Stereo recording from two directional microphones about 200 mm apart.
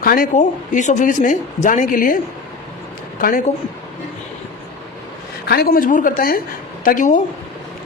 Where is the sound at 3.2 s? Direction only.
45° left (ahead or behind).